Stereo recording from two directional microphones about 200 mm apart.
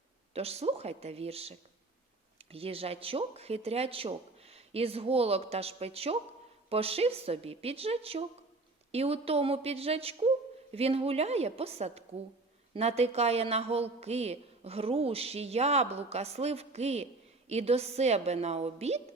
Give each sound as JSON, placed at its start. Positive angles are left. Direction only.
{"t": 0.3, "sound": "a woman's voice", "side_deg": -30}